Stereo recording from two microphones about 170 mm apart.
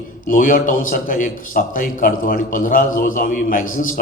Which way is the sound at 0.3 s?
55° left (ahead or behind).